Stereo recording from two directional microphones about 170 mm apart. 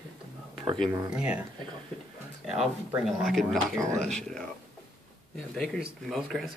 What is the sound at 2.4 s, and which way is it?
Speech, centre (ahead or behind).